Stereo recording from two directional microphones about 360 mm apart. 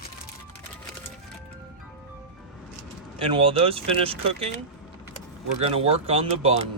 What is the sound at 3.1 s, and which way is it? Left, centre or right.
Speech, centre.